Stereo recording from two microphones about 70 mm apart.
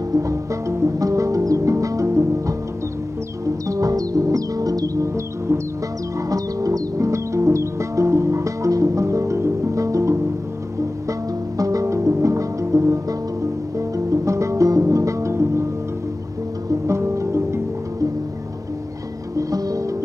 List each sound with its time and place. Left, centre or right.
0.1 s music: right
3.6 s music: right
6.1 s music: right
16.8 s music: right
19.3 s music: right